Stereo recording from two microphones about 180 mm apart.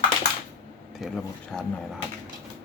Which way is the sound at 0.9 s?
Centre (ahead or behind).